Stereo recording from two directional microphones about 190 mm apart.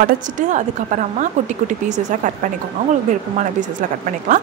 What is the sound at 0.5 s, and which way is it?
A woman's voice, 40° right (ahead or behind).